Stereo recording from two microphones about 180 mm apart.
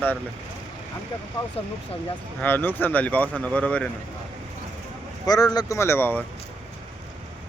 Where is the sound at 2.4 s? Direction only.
10° left (ahead or behind).